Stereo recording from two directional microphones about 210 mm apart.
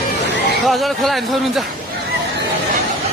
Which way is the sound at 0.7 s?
Centre (ahead or behind).